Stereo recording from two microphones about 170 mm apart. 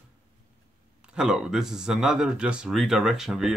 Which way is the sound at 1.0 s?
5° right (ahead or behind).